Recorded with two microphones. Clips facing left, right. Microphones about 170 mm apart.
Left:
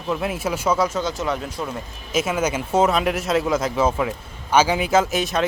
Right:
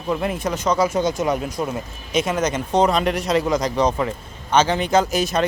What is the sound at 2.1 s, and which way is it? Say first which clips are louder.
Speech: right 1 dB; 5° left (ahead or behind).